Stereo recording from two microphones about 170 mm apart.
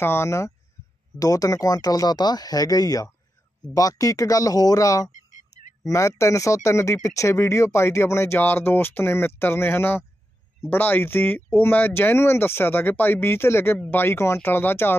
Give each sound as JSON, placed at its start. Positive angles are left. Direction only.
{"t": 0.0, "sound": "speech", "side_deg": 15}
{"t": 5.1, "sound": "a sound", "side_deg": 45}
{"t": 5.9, "sound": "speech", "side_deg": 15}